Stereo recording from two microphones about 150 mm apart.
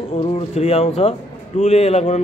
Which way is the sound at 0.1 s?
40° left (ahead or behind).